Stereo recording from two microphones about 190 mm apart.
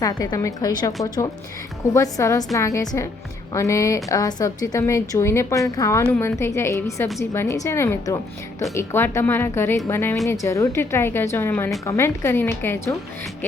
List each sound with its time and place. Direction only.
0.0 s a woman's voice: 20° left (ahead or behind)